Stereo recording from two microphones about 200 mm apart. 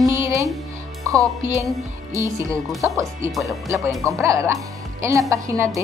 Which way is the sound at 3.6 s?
15° right (ahead or behind).